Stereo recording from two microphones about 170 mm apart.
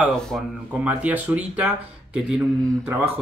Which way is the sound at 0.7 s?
10° right (ahead or behind).